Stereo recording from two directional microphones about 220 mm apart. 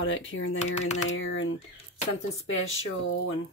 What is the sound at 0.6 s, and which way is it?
Speech, 30° left (ahead or behind).